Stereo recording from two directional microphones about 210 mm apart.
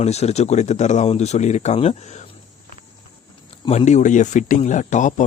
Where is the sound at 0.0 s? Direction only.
30° left (ahead or behind).